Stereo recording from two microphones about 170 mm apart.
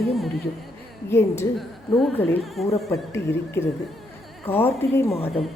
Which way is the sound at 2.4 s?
Centre (ahead or behind).